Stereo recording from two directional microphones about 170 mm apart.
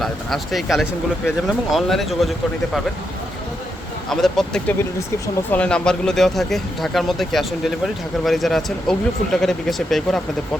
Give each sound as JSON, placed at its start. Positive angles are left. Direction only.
{"t": 0.0, "sound": "speech", "side_deg": 0}
{"t": 4.1, "sound": "speech", "side_deg": 5}
{"t": 4.8, "sound": "speech", "side_deg": 15}
{"t": 5.5, "sound": "speech", "side_deg": 5}